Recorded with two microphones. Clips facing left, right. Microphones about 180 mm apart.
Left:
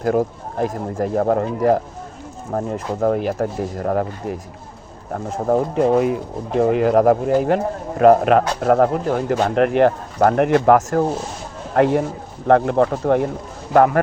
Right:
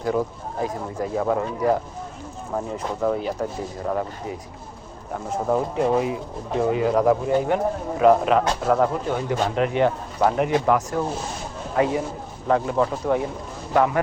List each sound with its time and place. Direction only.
0.6 s speech: 50° left (ahead or behind)
5.1 s speech: 45° left (ahead or behind)